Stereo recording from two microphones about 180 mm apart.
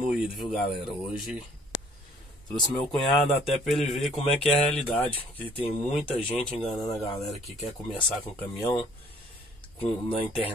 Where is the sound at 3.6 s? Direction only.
Centre (ahead or behind).